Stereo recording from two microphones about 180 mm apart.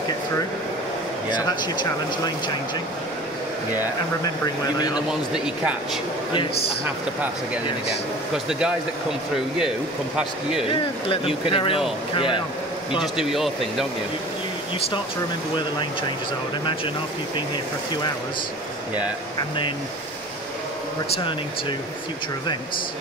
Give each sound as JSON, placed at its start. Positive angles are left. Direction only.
{"t": 1.3, "sound": "speech", "side_deg": 25}
{"t": 4.9, "sound": "speech", "side_deg": -5}
{"t": 8.5, "sound": "speech", "side_deg": -5}
{"t": 10.1, "sound": "speech", "side_deg": -5}
{"t": 10.7, "sound": "speech", "side_deg": 30}
{"t": 13.0, "sound": "speech", "side_deg": 0}
{"t": 15.5, "sound": "speech", "side_deg": 25}
{"t": 19.3, "sound": "speech", "side_deg": 25}